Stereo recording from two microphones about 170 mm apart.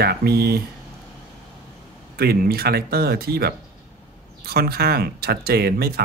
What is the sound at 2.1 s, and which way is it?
Speech, 65° right (ahead or behind).